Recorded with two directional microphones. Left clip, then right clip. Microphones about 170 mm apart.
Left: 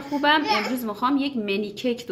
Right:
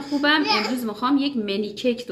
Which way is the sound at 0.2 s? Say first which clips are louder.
Even; 40° left (ahead or behind).